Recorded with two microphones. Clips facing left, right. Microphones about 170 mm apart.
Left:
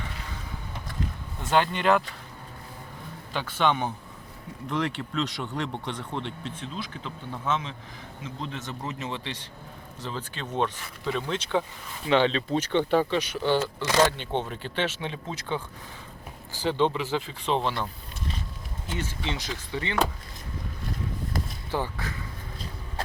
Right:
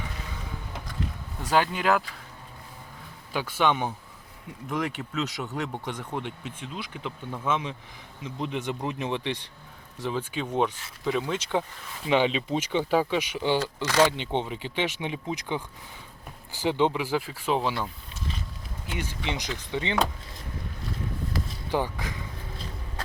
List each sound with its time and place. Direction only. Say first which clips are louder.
1.4 s speech: even; 5° right (ahead or behind)
3.3 s speech: right 1 dB; 10° right (ahead or behind)
18.9 s speech: even; 15° right (ahead or behind)
21.7 s speech: right 3 dB; 15° right (ahead or behind)